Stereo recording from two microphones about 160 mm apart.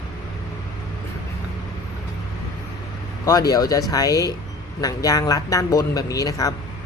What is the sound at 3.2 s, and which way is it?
Speech, 20° left (ahead or behind).